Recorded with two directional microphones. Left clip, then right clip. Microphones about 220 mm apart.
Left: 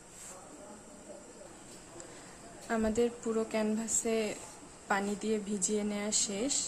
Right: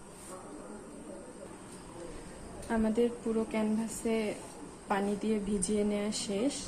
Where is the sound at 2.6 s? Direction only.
20° left (ahead or behind).